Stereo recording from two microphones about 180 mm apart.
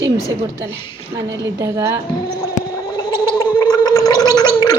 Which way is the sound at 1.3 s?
20° right (ahead or behind).